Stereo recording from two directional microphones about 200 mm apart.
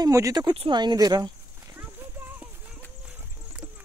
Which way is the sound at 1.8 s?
10° right (ahead or behind).